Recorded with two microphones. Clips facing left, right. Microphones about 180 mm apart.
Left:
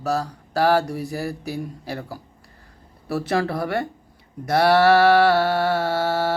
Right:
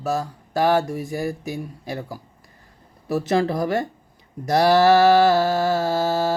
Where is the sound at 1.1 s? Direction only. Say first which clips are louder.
Right 1 dB; 15° right (ahead or behind).